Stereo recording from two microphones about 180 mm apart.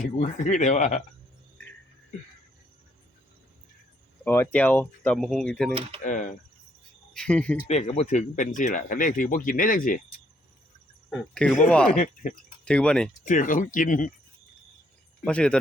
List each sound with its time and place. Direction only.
0.0 s speech: 45° left (ahead or behind)
4.2 s speech: 10° left (ahead or behind)
6.0 s a sound: 45° left (ahead or behind)
7.1 s speech: 5° left (ahead or behind)
7.7 s speech: 35° left (ahead or behind)
11.1 s speech: 5° left (ahead or behind)
12.2 s speech: 45° left (ahead or behind)
12.6 s speech: 5° left (ahead or behind)
13.2 s speech: 50° left (ahead or behind)
15.2 s speech: 5° left (ahead or behind)